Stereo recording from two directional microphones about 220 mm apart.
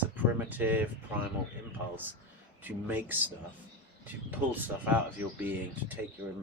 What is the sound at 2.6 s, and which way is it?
Speech, 10° right (ahead or behind).